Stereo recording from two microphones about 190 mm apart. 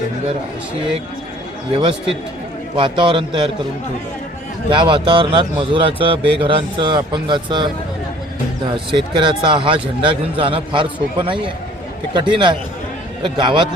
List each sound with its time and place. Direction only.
1.8 s a man's voice: 30° right (ahead or behind)
4.7 s a man's voice: 25° right (ahead or behind)
8.9 s a man's voice: 25° right (ahead or behind)